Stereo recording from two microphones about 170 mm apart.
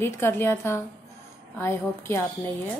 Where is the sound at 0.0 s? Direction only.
15° left (ahead or behind).